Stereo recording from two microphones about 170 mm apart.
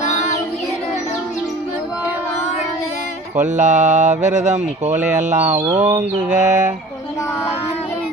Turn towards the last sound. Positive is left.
turn(degrees=-45)  # may be behind; listen again after turning